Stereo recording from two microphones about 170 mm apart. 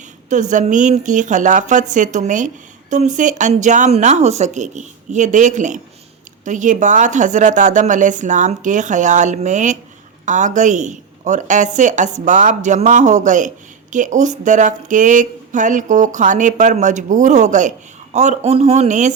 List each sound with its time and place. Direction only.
0.3 s speech: 45° right (ahead or behind)